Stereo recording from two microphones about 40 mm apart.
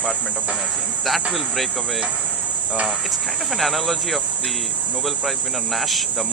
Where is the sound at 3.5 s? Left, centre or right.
Centre.